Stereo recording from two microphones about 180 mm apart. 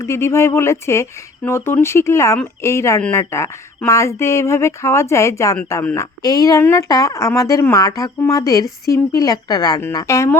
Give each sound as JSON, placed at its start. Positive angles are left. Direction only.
{"t": 0.0, "sound": "a woman's voice", "side_deg": 15}